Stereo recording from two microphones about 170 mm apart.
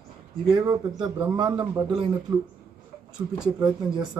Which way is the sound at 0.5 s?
25° right (ahead or behind).